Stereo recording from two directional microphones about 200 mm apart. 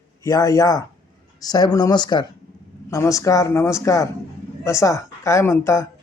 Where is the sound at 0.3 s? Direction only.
15° left (ahead or behind).